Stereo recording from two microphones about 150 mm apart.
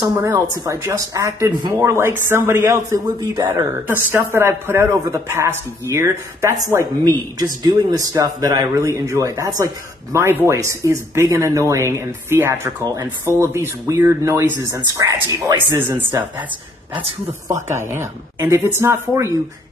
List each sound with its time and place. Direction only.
0.0 s a man's voice: 25° right (ahead or behind)
17.6 s a man's voice: 15° right (ahead or behind)